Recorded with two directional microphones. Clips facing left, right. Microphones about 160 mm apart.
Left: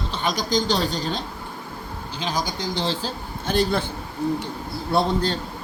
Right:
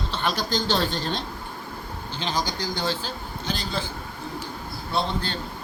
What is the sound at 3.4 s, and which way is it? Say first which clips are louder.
Speech: left 9 dB; 60° left (ahead or behind).